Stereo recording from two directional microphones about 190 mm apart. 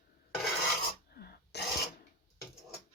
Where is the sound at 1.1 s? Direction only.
55° left (ahead or behind).